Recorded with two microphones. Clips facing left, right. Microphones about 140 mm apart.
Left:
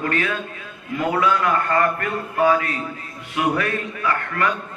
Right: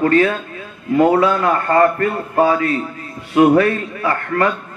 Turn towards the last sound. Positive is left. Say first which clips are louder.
# right 5 dB
turn(degrees=-35)  # may be behind; listen again after turning